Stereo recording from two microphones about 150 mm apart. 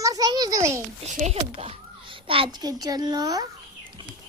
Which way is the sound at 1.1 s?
55° right (ahead or behind).